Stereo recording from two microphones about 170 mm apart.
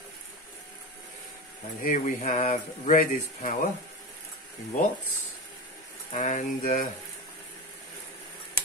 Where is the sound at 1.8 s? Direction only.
50° left (ahead or behind).